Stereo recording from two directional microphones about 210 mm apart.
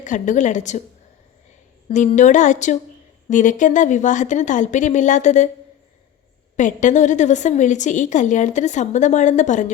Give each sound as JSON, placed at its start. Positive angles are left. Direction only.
{"t": 0.0, "sound": "a woman's voice", "side_deg": 35}
{"t": 1.9, "sound": "a woman's voice", "side_deg": 35}
{"t": 6.6, "sound": "a woman's voice", "side_deg": 35}